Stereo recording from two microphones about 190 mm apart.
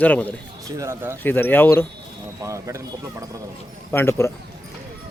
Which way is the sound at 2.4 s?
15° right (ahead or behind).